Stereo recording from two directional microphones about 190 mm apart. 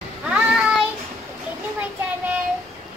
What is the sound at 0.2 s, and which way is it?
Child singing, 5° right (ahead or behind).